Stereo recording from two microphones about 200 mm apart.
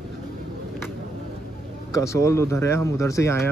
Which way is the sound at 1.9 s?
15° left (ahead or behind).